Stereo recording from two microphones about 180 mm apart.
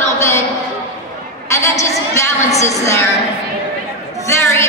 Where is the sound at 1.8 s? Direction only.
15° left (ahead or behind).